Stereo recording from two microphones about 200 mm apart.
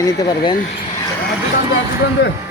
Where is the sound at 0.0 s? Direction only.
20° left (ahead or behind).